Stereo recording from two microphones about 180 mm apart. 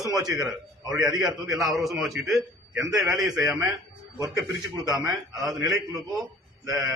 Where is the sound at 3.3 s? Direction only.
20° right (ahead or behind).